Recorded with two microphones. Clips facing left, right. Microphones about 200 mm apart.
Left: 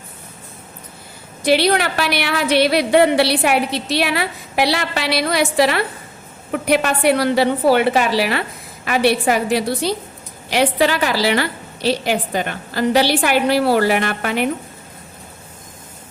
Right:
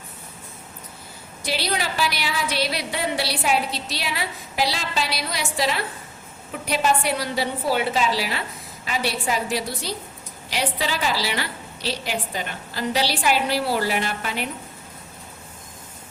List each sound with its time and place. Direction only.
1.5 s a woman's voice: 65° left (ahead or behind)